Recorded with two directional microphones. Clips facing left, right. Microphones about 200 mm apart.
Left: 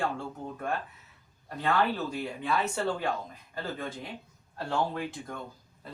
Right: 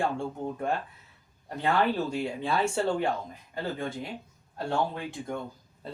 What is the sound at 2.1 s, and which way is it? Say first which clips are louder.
Speech: right 2 dB; 30° right (ahead or behind).